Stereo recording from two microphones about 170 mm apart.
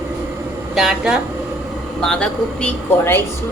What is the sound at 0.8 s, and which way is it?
A woman's voice, 5° right (ahead or behind).